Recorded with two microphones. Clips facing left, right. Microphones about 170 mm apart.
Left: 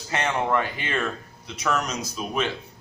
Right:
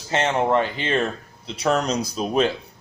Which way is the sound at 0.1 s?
25° right (ahead or behind).